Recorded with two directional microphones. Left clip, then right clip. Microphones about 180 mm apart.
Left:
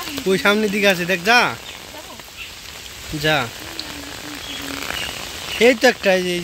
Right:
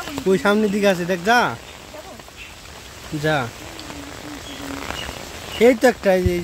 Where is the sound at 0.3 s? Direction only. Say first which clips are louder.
Left 1 dB; 15° right (ahead or behind).